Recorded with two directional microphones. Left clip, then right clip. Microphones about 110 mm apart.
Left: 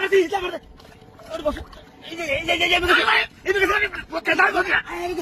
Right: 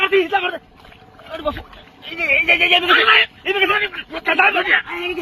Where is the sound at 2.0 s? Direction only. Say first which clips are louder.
Right 8 dB; centre (ahead or behind).